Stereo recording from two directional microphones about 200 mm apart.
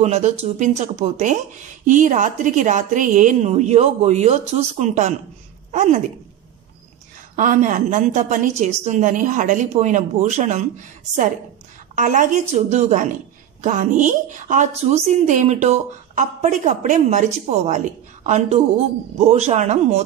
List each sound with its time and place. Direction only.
0.0 s a woman's voice: 35° right (ahead or behind)
7.3 s speech: 40° right (ahead or behind)
11.9 s speech: 40° right (ahead or behind)